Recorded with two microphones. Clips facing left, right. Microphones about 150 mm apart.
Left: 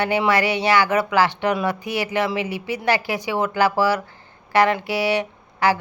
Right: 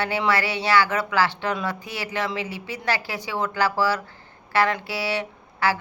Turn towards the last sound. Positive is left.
turn(degrees=15)  # may be behind; listen again after turning